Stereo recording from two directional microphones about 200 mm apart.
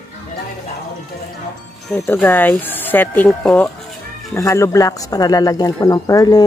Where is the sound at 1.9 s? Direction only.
10° left (ahead or behind).